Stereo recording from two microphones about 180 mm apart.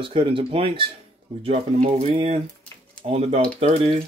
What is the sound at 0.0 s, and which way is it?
Speech, 30° right (ahead or behind).